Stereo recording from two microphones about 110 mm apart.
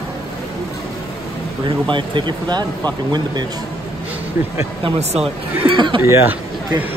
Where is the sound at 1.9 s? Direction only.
45° right (ahead or behind).